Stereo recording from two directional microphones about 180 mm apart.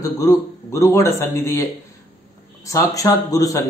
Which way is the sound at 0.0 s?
20° left (ahead or behind).